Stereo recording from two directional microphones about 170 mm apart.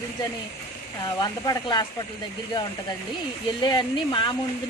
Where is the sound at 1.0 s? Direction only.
25° left (ahead or behind).